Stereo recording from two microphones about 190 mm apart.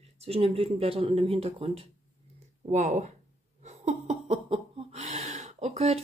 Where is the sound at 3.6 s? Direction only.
40° right (ahead or behind).